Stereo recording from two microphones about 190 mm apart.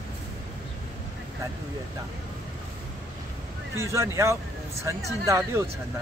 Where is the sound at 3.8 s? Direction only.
15° right (ahead or behind).